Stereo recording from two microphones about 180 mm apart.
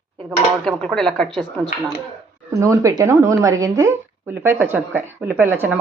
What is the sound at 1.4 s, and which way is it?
A woman's voice, 25° right (ahead or behind).